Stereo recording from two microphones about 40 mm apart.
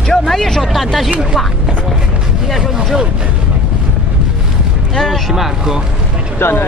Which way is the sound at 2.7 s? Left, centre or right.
Centre.